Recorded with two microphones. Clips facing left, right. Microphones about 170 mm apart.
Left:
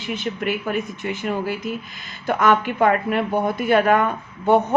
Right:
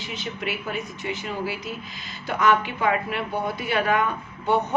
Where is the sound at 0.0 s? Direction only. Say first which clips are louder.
Left 6 dB; 50° left (ahead or behind).